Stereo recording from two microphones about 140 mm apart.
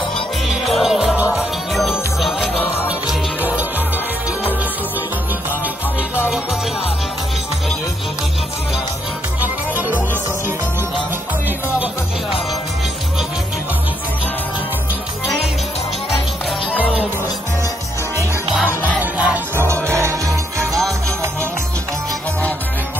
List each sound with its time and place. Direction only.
0.7 s music: centre (ahead or behind)
9.4 s music: 10° right (ahead or behind)
18.7 s music: 10° right (ahead or behind)
20.2 s music: centre (ahead or behind)